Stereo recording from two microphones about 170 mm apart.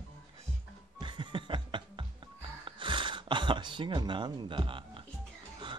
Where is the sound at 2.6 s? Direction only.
30° right (ahead or behind).